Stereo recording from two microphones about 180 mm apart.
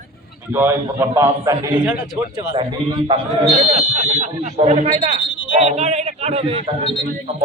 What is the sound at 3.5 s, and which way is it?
Speech, 40° right (ahead or behind).